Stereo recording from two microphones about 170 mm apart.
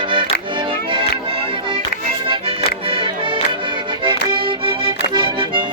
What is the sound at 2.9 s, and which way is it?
Music, 30° right (ahead or behind).